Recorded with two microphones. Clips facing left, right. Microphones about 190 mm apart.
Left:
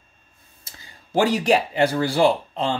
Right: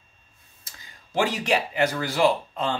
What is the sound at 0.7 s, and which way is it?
Speech, 35° left (ahead or behind).